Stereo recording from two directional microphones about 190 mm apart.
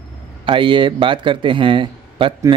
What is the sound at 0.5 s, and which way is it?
Speech, 25° right (ahead or behind).